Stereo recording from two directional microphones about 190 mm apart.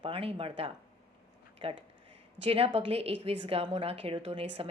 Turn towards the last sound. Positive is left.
turn(degrees=-30)  # may be behind; listen again after turning